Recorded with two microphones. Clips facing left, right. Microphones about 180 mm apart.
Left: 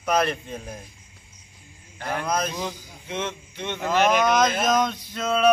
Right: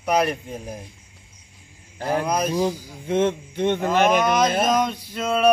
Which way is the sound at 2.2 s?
10° right (ahead or behind).